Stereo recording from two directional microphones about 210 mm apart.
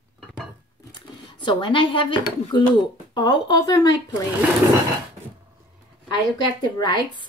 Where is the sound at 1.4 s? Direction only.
25° left (ahead or behind).